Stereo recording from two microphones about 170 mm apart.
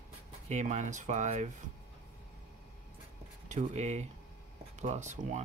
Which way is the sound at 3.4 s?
40° right (ahead or behind).